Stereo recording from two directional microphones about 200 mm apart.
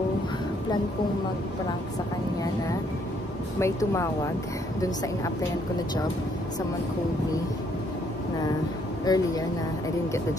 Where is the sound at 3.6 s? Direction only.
15° left (ahead or behind).